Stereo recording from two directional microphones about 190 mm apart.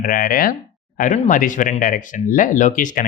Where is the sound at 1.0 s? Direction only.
35° left (ahead or behind).